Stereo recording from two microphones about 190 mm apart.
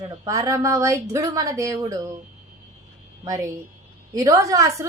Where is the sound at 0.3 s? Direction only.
15° right (ahead or behind).